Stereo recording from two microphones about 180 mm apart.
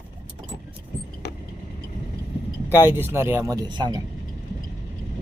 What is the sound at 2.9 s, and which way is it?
Speech, 10° right (ahead or behind).